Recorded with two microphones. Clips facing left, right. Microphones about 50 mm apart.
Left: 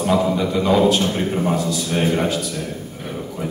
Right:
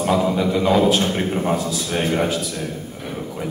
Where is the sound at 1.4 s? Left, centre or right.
Centre.